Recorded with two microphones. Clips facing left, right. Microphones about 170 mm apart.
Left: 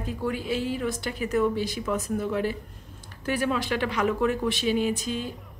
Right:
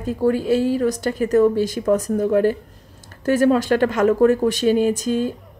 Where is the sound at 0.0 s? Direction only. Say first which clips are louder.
Right 10 dB; 40° right (ahead or behind).